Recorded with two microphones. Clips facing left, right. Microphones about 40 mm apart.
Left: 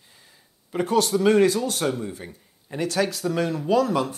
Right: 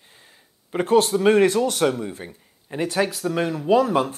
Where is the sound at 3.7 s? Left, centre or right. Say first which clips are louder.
Right 4 dB; right.